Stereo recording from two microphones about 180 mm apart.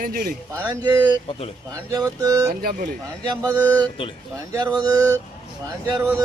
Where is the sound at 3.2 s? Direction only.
20° right (ahead or behind).